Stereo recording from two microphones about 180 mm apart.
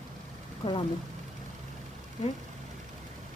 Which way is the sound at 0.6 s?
35° left (ahead or behind).